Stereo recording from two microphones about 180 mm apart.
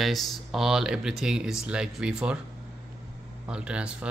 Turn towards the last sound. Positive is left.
turn(degrees=-5)  # may be behind; listen again after turning